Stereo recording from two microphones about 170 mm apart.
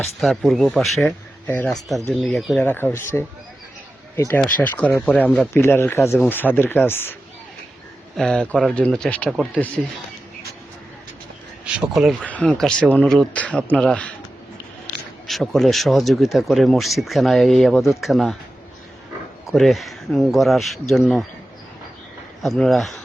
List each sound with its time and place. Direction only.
0.2 s speech: centre (ahead or behind)
1.0 s speech: 10° left (ahead or behind)
2.0 s speech: centre (ahead or behind)
2.6 s speech: 10° left (ahead or behind)
11.6 s speech: centre (ahead or behind)
15.3 s speech: centre (ahead or behind)
19.5 s speech: centre (ahead or behind)
22.4 s speech: centre (ahead or behind)